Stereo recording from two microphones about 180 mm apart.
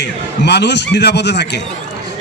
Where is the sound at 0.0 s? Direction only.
70° left (ahead or behind).